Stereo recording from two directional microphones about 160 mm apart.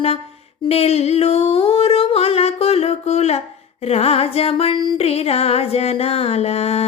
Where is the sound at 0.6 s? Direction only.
40° left (ahead or behind).